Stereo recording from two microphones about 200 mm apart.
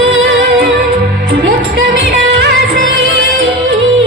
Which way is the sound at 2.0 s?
65° right (ahead or behind).